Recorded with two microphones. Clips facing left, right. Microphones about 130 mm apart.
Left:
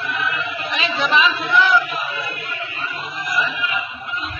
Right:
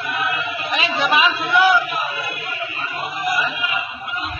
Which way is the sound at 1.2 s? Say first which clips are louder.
Right 2 dB; 40° right (ahead or behind).